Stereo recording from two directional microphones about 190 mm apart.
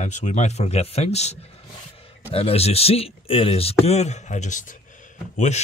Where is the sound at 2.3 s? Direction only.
30° left (ahead or behind).